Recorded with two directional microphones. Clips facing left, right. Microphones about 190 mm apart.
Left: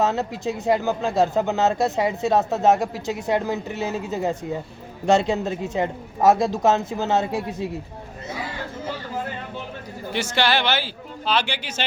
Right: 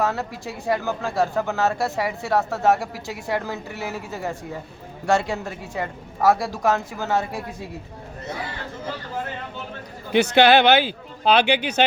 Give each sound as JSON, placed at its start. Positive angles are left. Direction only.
{"t": 0.0, "sound": "speech", "side_deg": 20}
{"t": 10.2, "sound": "speech", "side_deg": -60}